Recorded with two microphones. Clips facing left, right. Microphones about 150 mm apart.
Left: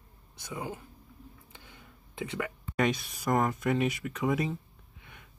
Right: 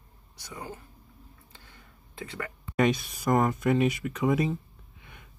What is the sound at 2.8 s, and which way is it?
Speech, 20° right (ahead or behind).